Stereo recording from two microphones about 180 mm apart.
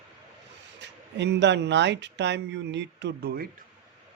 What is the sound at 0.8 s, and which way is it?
Speech, 75° right (ahead or behind).